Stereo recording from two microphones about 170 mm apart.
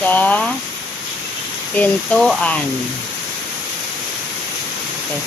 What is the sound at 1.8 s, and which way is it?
Speech, 5° left (ahead or behind).